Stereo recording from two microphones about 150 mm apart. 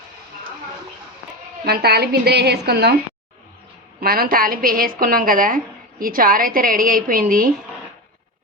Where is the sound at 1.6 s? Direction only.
90° right.